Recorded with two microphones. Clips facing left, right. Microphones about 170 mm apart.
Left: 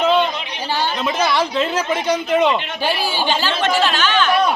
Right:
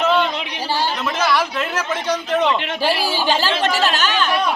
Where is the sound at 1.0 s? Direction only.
15° left (ahead or behind).